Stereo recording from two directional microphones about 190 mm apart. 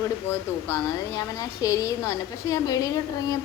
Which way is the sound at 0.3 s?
15° left (ahead or behind).